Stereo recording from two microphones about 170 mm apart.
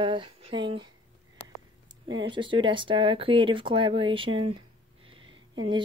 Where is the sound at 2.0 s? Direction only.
25° right (ahead or behind).